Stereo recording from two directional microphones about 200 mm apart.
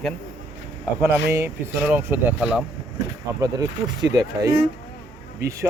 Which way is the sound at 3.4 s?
20° right (ahead or behind).